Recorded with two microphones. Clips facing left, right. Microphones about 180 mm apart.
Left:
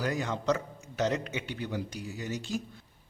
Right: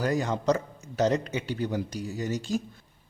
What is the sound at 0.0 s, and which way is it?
A man's voice, 40° right (ahead or behind).